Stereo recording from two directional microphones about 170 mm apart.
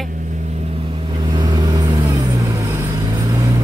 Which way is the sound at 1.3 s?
25° right (ahead or behind).